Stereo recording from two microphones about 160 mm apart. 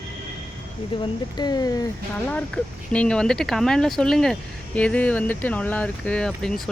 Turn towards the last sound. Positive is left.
turn(degrees=0)  # may be behind; listen again after turning